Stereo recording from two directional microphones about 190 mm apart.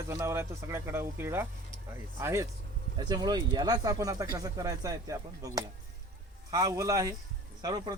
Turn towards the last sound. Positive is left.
turn(degrees=-20)  # may be behind; listen again after turning